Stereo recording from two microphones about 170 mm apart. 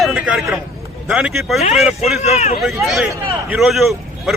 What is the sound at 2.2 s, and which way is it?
Speech, 40° left (ahead or behind).